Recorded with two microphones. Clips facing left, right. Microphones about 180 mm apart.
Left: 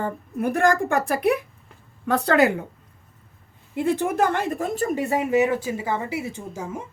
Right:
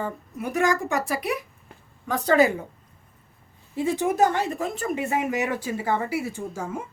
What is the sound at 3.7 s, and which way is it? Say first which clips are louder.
Speech: left 1 dB; 60° left (ahead or behind).